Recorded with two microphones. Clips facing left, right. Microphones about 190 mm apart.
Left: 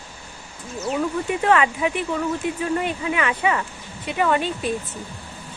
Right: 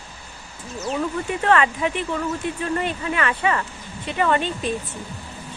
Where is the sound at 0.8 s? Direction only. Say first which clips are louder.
Left 1 dB; 10° left (ahead or behind).